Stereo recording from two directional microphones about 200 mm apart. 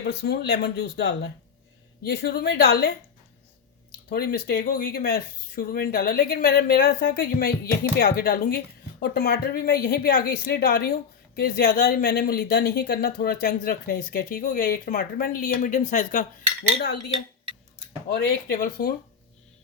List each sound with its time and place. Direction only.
0.0 s speech: 55° left (ahead or behind)
4.1 s speech: 50° left (ahead or behind)
18.1 s speech: 45° left (ahead or behind)